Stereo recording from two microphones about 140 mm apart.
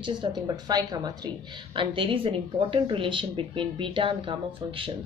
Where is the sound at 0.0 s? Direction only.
30° right (ahead or behind).